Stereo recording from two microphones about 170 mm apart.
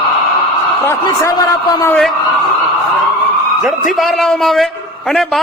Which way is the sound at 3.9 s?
Centre (ahead or behind).